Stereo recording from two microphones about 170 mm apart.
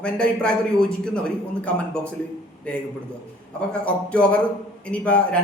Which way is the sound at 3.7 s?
5° left (ahead or behind).